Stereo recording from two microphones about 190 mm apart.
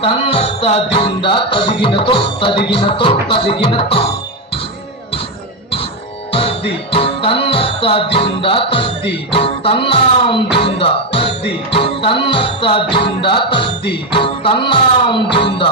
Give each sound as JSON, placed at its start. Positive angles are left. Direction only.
{"t": 0.0, "sound": "music", "side_deg": 30}
{"t": 6.3, "sound": "music", "side_deg": 30}